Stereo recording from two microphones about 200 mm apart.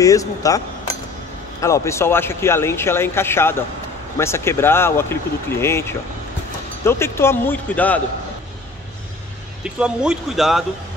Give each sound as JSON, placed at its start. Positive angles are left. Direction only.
{"t": 0.0, "sound": "speech", "side_deg": 15}
{"t": 9.8, "sound": "speech", "side_deg": -5}